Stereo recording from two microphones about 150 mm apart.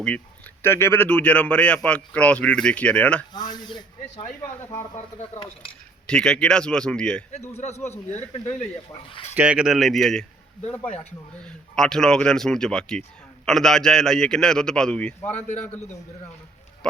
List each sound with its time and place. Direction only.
0.6 s a man's voice: 15° left (ahead or behind)
3.3 s speech: 30° left (ahead or behind)
6.1 s a man's voice: 5° left (ahead or behind)
7.6 s speech: 50° left (ahead or behind)
9.3 s a man's voice: 10° right (ahead or behind)
11.4 s a man's voice: 5° left (ahead or behind)
16.8 s a man's voice: 5° left (ahead or behind)